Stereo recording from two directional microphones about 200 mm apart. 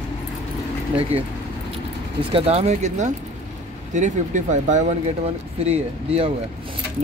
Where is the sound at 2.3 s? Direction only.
30° right (ahead or behind).